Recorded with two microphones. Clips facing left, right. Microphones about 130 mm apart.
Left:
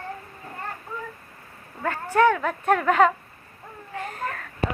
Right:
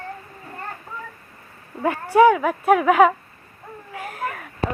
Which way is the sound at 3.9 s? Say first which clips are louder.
Right 2 dB; 5° right (ahead or behind).